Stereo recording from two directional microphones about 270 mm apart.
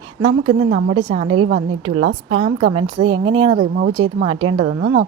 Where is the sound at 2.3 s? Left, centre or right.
Right.